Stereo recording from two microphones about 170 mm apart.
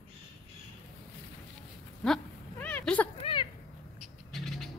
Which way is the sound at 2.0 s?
5° left (ahead or behind).